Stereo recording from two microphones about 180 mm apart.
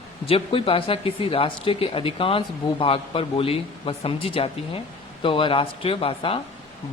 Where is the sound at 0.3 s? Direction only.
30° left (ahead or behind).